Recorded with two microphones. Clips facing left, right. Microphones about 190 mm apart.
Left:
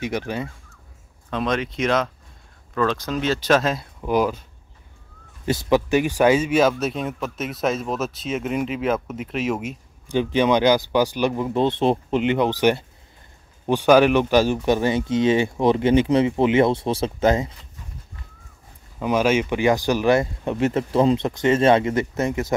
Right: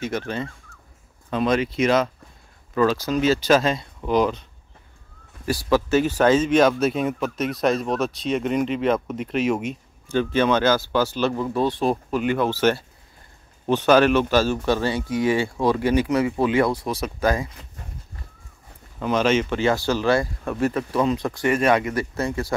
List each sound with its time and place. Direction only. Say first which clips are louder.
0.0 s speech: left 1 dB; 15° left (ahead or behind)
1.3 s speech: right 3 dB; centre (ahead or behind)
5.4 s speech: left 1 dB; 20° left (ahead or behind); by 9.8 s centre (ahead or behind)
10.0 s speech: left 1 dB; 15° left (ahead or behind)
18.9 s speech: left 1 dB; 10° left (ahead or behind)